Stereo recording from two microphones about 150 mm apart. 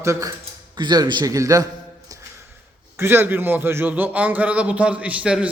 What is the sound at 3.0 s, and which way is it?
A man's voice, 15° right (ahead or behind).